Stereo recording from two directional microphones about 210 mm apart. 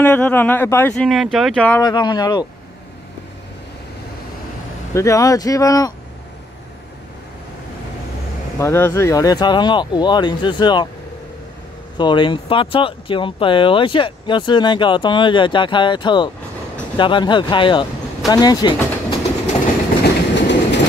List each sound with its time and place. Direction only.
0.0 s speech: 10° left (ahead or behind)
1.8 s speech: 20° left (ahead or behind)
4.9 s speech: 15° left (ahead or behind)
8.5 s speech: 10° left (ahead or behind)
12.0 s speech: 20° left (ahead or behind)
20.0 s train: 55° left (ahead or behind)